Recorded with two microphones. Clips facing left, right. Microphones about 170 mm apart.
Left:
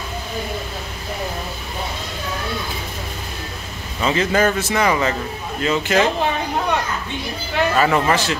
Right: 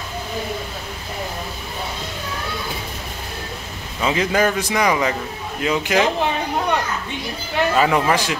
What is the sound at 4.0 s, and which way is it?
A man's voice, 10° right (ahead or behind).